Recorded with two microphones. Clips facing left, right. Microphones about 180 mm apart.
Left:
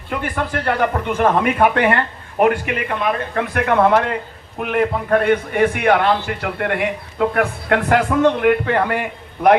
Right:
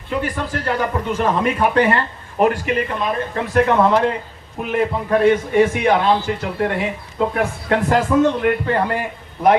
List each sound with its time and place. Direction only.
0.1 s a man's voice: 60° left (ahead or behind)